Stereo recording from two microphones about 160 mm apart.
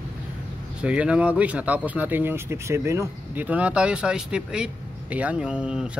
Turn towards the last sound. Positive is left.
turn(degrees=-5)  # may be behind; listen again after turning